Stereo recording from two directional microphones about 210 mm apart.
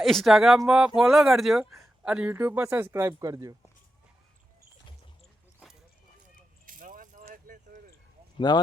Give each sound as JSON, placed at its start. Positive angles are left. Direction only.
{"t": 0.0, "sound": "speech", "side_deg": 0}
{"t": 6.7, "sound": "a sound", "side_deg": -40}
{"t": 8.4, "sound": "speech", "side_deg": 20}